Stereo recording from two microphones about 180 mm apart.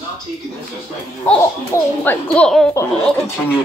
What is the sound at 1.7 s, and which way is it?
A child's voice, 10° left (ahead or behind).